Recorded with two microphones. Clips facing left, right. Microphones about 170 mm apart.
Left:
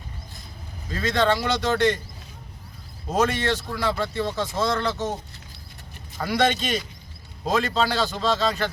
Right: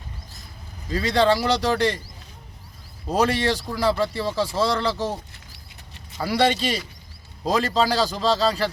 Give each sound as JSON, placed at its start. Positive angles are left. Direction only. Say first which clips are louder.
{"t": 0.9, "sound": "a man's voice", "louder": "right 3 dB", "side_deg": -35}
{"t": 3.1, "sound": "a man's voice", "louder": "right 2 dB", "side_deg": -35}
{"t": 6.1, "sound": "a man's voice", "louder": "right 2 dB", "side_deg": -30}